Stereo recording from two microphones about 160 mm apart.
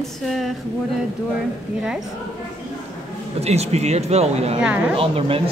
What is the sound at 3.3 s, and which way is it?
Speech, 40° right (ahead or behind).